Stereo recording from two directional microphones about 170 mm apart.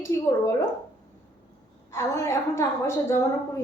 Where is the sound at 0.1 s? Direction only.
15° left (ahead or behind).